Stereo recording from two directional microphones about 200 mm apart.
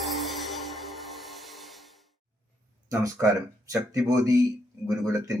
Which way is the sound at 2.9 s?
15° right (ahead or behind).